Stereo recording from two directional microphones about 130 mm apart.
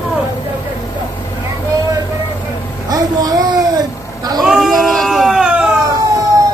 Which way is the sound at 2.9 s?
30° right (ahead or behind).